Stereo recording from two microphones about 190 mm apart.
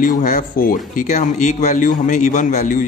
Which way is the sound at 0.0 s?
45° left (ahead or behind).